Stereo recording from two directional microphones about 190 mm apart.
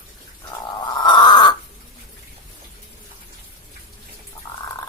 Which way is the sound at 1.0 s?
20° left (ahead or behind).